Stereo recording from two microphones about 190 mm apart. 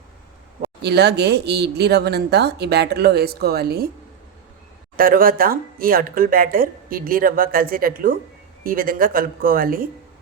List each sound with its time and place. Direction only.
0.8 s speech: 60° right (ahead or behind)
4.9 s speech: 50° right (ahead or behind)